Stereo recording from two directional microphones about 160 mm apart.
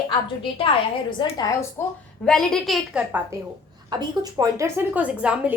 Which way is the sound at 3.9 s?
25° right (ahead or behind).